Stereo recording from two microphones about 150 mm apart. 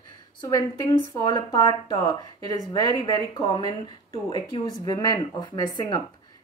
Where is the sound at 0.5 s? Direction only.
20° left (ahead or behind).